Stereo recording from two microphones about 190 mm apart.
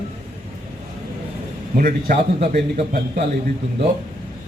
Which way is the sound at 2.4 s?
35° right (ahead or behind).